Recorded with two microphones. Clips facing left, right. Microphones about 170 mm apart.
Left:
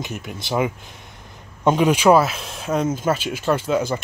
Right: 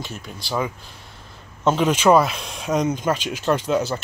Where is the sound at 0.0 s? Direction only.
15° left (ahead or behind).